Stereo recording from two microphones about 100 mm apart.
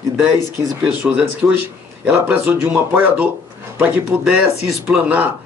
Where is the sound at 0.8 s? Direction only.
10° right (ahead or behind).